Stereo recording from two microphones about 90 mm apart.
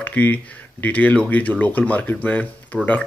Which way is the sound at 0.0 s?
20° left (ahead or behind).